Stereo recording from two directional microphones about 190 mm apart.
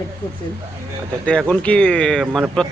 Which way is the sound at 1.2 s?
5° left (ahead or behind).